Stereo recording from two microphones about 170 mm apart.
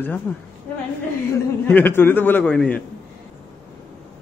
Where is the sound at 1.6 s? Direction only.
10° left (ahead or behind).